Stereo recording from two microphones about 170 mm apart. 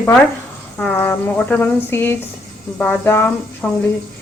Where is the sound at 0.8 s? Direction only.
5° left (ahead or behind).